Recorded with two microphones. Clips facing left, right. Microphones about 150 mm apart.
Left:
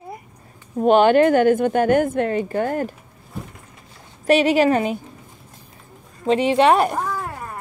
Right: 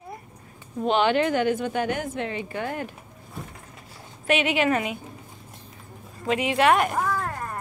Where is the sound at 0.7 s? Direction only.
50° left (ahead or behind).